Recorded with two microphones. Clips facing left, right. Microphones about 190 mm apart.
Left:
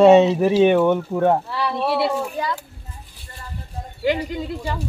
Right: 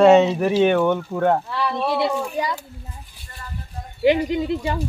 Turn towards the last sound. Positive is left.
turn(degrees=-20)  # may be behind; listen again after turning